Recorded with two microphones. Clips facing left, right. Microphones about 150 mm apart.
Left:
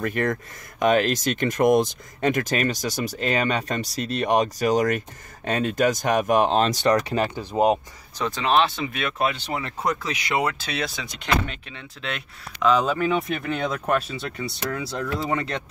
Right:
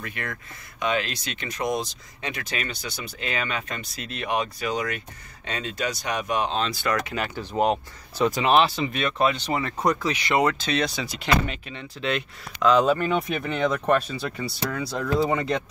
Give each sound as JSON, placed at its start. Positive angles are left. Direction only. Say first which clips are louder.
{"t": 0.0, "sound": "speech", "louder": "left 10 dB", "side_deg": 40}
{"t": 6.8, "sound": "speech", "louder": "left 6 dB", "side_deg": 35}
{"t": 7.3, "sound": "speech", "louder": "left 1 dB", "side_deg": 15}
{"t": 8.4, "sound": "speech", "louder": "even", "side_deg": -5}